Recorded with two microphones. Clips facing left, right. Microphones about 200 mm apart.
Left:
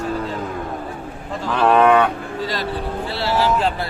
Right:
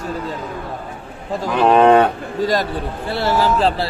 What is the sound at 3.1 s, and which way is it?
Speech, 50° right (ahead or behind).